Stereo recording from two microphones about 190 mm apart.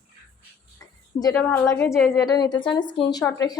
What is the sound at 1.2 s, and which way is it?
Speech, 10° left (ahead or behind).